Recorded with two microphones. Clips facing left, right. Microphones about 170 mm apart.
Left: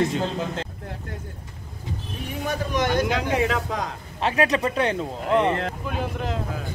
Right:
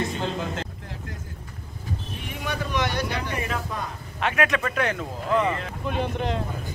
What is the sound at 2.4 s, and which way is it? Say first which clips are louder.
Speech: left 3 dB; 45° left (ahead or behind).